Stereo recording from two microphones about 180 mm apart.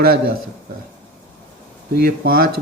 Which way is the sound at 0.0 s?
55° right (ahead or behind).